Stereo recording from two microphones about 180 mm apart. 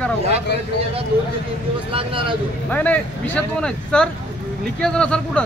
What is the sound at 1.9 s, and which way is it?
Speech, 30° right (ahead or behind).